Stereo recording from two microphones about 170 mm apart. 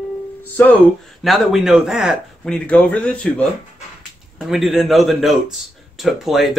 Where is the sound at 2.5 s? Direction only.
5° left (ahead or behind).